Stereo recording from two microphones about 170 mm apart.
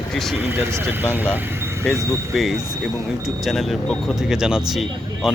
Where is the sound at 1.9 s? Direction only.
5° left (ahead or behind).